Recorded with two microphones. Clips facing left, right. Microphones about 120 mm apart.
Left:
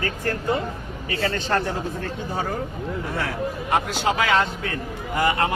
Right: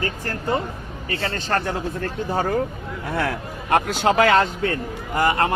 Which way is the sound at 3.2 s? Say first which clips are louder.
Right 4 dB; 60° right (ahead or behind).